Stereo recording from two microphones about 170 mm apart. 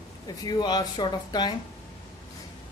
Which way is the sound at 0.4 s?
25° left (ahead or behind).